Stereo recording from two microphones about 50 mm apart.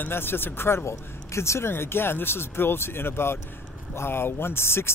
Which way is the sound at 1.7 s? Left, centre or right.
Left.